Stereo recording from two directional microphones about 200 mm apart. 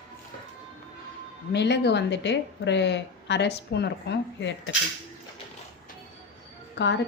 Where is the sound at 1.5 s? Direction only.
60° left (ahead or behind).